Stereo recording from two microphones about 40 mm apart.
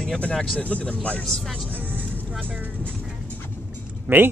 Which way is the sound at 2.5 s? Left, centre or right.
Right.